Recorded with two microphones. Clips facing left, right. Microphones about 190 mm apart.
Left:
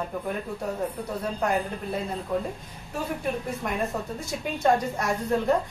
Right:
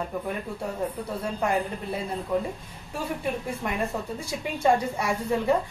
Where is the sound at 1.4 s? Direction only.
5° right (ahead or behind).